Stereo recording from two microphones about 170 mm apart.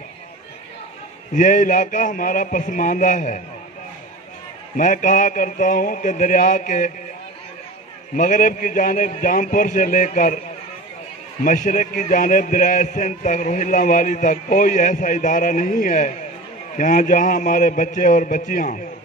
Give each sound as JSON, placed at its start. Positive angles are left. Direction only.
{"t": 1.3, "sound": "a man's voice", "side_deg": 50}
{"t": 4.7, "sound": "a man's voice", "side_deg": 50}
{"t": 8.2, "sound": "a man's voice", "side_deg": 50}
{"t": 11.4, "sound": "a man's voice", "side_deg": 50}